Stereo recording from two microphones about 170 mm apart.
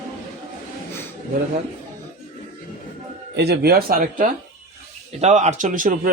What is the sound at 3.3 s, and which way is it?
Speech, 75° right (ahead or behind).